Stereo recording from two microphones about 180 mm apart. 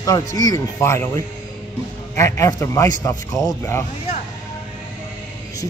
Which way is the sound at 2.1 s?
15° left (ahead or behind).